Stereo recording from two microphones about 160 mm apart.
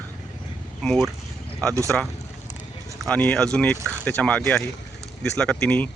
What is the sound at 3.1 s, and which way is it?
Speech, 10° left (ahead or behind).